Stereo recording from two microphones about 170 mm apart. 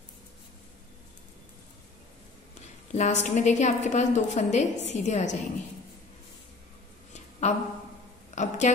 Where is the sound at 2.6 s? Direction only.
45° left (ahead or behind).